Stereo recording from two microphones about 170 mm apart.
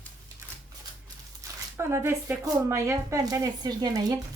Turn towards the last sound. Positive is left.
turn(degrees=-20)  # may be behind; listen again after turning